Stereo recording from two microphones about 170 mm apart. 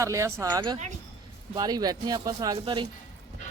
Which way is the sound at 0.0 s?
15° right (ahead or behind).